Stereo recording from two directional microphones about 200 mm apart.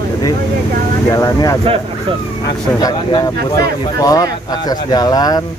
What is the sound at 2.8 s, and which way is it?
Speech, 20° left (ahead or behind).